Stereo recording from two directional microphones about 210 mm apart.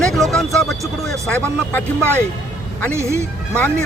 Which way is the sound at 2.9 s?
15° right (ahead or behind).